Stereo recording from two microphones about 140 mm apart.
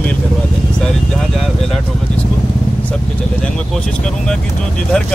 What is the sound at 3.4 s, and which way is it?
Speech, 5° left (ahead or behind).